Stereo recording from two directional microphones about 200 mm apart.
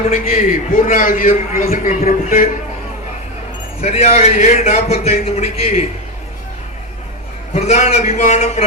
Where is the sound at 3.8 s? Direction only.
30° left (ahead or behind).